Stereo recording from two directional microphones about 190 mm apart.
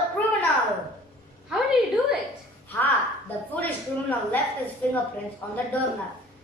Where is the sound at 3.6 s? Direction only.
10° left (ahead or behind).